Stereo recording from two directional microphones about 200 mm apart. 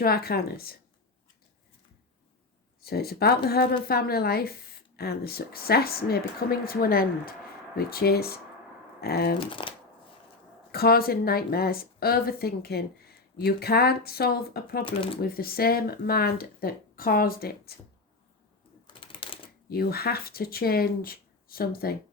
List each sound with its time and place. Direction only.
0.0 s a woman's voice: 50° left (ahead or behind)
2.8 s a woman's voice: 50° left (ahead or behind)
9.5 s speech: 25° left (ahead or behind)
10.7 s a woman's voice: 50° left (ahead or behind)
14.8 s speech: 25° left (ahead or behind)
15.2 s a woman's voice: 50° left (ahead or behind)
18.9 s typewriter: 25° left (ahead or behind)
19.6 s a woman's voice: 50° left (ahead or behind)